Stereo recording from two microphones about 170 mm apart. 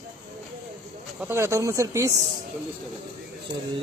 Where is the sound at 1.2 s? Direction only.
15° right (ahead or behind).